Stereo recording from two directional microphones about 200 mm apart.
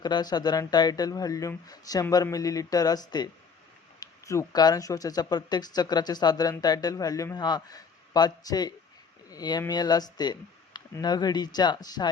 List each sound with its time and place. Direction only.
0.0 s speech: 20° left (ahead or behind)